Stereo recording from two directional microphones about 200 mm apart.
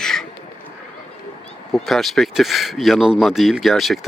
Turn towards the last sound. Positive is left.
turn(degrees=0)  # may be behind; listen again after turning